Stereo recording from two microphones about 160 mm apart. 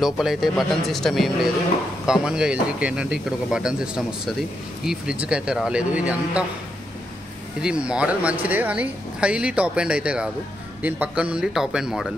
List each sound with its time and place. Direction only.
0.0 s speech: centre (ahead or behind)
7.6 s speech: 5° right (ahead or behind)